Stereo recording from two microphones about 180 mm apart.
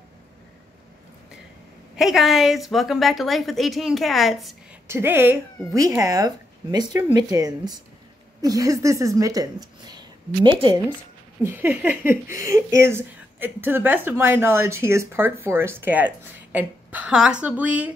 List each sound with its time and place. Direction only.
2.0 s a woman's voice: centre (ahead or behind)
4.8 s a woman's voice: 10° right (ahead or behind); by 10.8 s 30° right (ahead or behind)
11.4 s speech: 10° right (ahead or behind)